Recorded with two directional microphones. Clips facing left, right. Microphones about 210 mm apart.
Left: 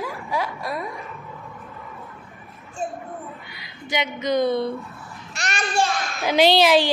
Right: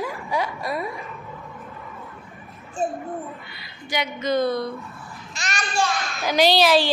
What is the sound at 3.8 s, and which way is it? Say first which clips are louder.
Speech: left 1 dB; 20° left (ahead or behind).